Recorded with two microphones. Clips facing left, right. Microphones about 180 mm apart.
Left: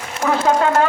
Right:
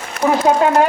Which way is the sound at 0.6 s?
15° right (ahead or behind).